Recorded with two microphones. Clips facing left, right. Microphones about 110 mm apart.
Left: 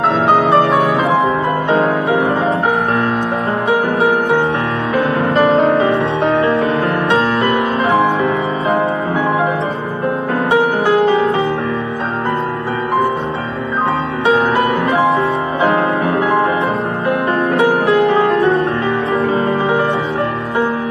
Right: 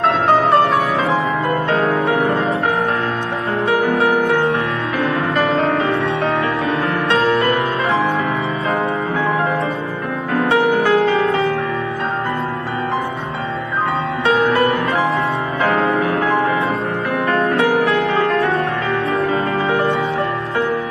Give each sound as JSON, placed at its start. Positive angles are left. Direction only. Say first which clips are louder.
{"t": 1.7, "sound": "music", "louder": "left 4 dB", "side_deg": 25}
{"t": 3.8, "sound": "music", "louder": "left 1 dB", "side_deg": 30}
{"t": 10.3, "sound": "music", "louder": "right 1 dB", "side_deg": 30}
{"t": 14.3, "sound": "music", "louder": "left 1 dB", "side_deg": 30}
{"t": 15.6, "sound": "music", "louder": "left 2 dB", "side_deg": 20}
{"t": 17.5, "sound": "music", "louder": "left 5 dB", "side_deg": 30}
{"t": 19.2, "sound": "music", "louder": "left 3 dB", "side_deg": 30}